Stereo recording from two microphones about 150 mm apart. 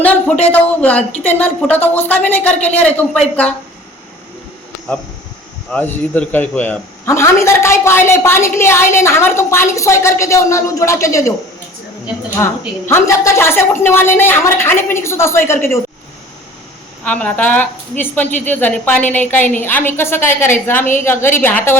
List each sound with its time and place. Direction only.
0.0 s a man's voice: 10° left (ahead or behind)
5.7 s a man's voice: 10° left (ahead or behind)
12.4 s a man's voice: 15° left (ahead or behind)
17.0 s a man's voice: 10° left (ahead or behind)